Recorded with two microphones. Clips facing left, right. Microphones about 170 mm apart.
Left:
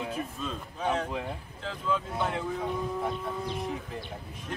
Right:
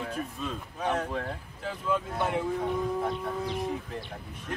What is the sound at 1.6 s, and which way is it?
Speech, 10° right (ahead or behind).